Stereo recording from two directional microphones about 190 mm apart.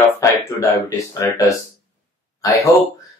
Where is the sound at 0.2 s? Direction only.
15° left (ahead or behind).